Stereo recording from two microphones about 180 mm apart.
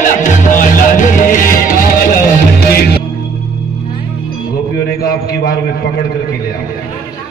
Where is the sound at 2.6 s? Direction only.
60° left (ahead or behind).